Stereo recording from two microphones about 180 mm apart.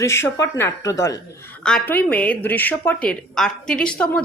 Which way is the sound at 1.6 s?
5° left (ahead or behind).